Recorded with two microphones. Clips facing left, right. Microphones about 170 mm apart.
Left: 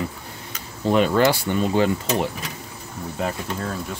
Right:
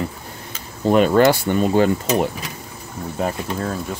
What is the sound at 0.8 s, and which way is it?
Speech, 50° right (ahead or behind).